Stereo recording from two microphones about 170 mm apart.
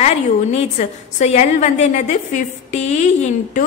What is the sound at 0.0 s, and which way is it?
A woman's voice, 40° left (ahead or behind).